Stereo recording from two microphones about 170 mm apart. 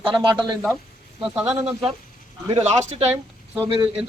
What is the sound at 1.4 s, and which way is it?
Speech, 10° right (ahead or behind).